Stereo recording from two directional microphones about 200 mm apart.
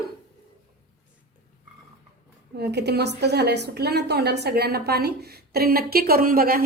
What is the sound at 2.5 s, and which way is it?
A woman's voice, 55° right (ahead or behind).